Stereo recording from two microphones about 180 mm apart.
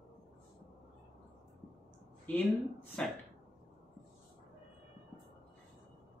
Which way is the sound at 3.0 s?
5° left (ahead or behind).